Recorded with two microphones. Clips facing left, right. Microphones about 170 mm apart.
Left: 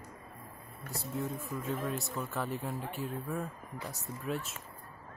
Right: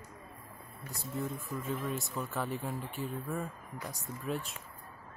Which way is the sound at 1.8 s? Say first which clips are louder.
Left 1 dB; centre (ahead or behind).